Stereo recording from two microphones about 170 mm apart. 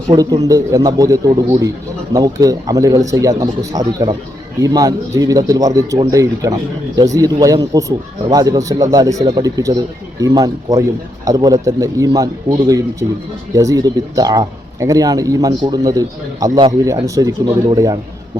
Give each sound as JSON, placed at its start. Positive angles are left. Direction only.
{"t": 0.1, "sound": "speech", "side_deg": -20}